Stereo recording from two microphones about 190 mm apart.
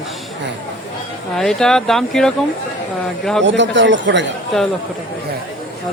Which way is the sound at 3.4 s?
75° right (ahead or behind).